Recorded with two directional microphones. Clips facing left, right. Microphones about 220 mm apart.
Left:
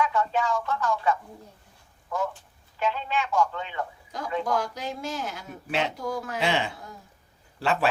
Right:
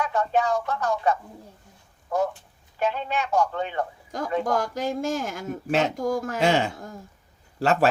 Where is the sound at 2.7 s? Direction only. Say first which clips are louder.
Right 2 dB; 45° right (ahead or behind).